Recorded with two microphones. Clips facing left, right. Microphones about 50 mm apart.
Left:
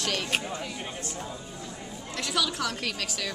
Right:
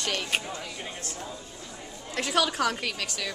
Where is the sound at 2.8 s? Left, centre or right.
Centre.